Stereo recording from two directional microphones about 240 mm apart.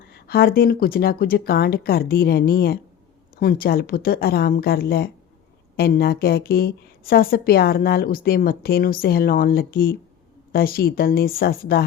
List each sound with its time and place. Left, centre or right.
0.1 s a woman's voice: left